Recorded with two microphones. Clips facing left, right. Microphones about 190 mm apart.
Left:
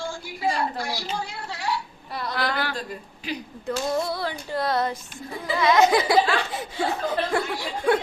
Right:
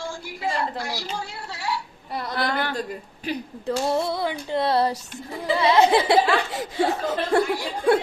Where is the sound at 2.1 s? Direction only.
45° right (ahead or behind).